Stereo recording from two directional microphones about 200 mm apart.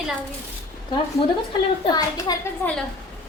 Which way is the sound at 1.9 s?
20° left (ahead or behind).